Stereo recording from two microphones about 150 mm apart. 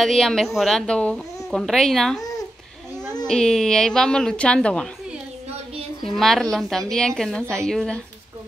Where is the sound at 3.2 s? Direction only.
5° left (ahead or behind).